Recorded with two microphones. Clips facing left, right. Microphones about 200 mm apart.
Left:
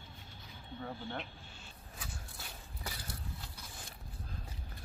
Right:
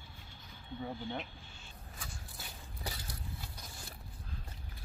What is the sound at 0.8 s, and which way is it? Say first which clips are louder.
Speech: right 2 dB; 15° right (ahead or behind).